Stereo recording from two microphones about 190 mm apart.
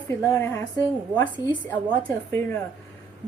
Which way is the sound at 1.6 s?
10° left (ahead or behind).